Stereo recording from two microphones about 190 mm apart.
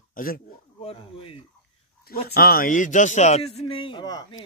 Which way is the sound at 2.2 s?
50° left (ahead or behind).